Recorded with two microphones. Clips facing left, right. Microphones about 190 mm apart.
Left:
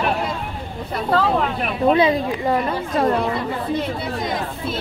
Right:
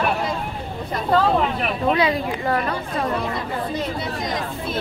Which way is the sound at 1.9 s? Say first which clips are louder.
Left 3 dB; 25° left (ahead or behind).